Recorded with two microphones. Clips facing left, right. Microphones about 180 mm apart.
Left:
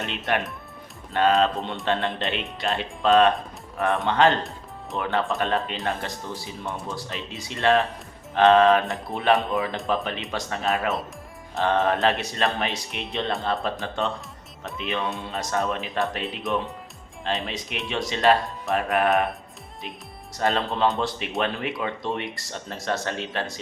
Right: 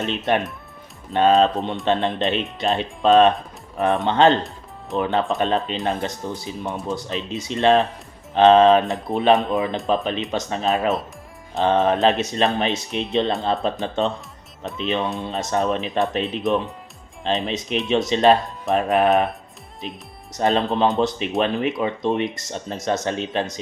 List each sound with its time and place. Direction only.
0.3 s speech: 20° right (ahead or behind)
20.3 s speech: 20° right (ahead or behind)